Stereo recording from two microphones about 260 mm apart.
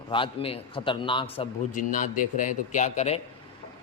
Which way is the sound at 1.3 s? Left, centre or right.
Left.